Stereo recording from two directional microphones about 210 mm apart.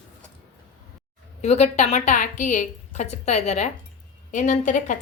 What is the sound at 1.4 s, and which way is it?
A woman's voice, 30° left (ahead or behind).